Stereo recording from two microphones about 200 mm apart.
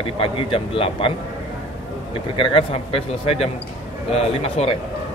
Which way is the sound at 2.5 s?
30° left (ahead or behind).